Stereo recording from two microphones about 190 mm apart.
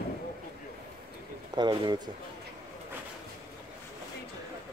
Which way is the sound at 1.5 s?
25° right (ahead or behind).